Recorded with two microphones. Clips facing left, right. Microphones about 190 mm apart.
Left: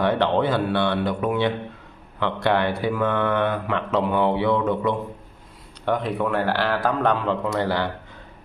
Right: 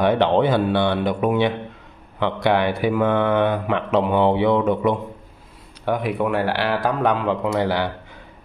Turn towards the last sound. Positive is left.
turn(degrees=-15)  # may be behind; listen again after turning